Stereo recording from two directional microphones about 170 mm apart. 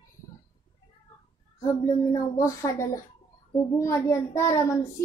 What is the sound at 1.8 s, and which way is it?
A child's voice, 20° left (ahead or behind).